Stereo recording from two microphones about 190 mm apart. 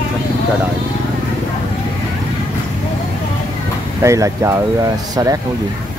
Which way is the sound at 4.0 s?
15° right (ahead or behind).